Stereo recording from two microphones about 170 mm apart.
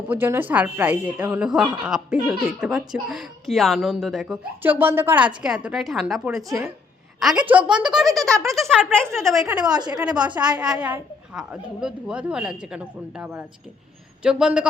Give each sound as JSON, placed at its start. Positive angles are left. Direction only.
{"t": 0.1, "sound": "a woman's voice", "side_deg": -10}
{"t": 4.6, "sound": "a woman's voice", "side_deg": -10}
{"t": 9.3, "sound": "a woman's voice", "side_deg": -20}
{"t": 10.7, "sound": "a woman's voice", "side_deg": -5}